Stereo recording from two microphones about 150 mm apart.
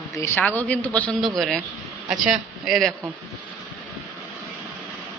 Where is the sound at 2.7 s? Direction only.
Centre (ahead or behind).